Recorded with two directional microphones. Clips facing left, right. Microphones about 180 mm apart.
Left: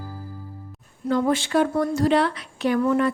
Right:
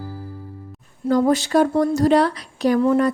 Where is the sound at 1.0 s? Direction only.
40° right (ahead or behind).